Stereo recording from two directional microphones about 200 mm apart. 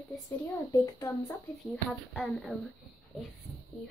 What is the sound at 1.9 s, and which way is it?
Speech, centre (ahead or behind).